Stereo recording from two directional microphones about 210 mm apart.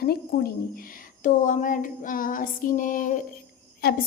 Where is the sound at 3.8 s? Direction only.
50° left (ahead or behind).